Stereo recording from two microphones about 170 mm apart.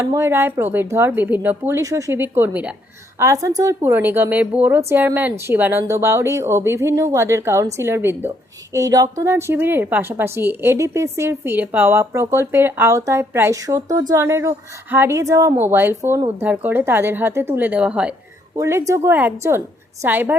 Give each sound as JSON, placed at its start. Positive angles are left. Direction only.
{"t": 0.0, "sound": "a woman's voice", "side_deg": -15}
{"t": 3.2, "sound": "a woman's voice", "side_deg": -20}
{"t": 18.5, "sound": "a woman's voice", "side_deg": -15}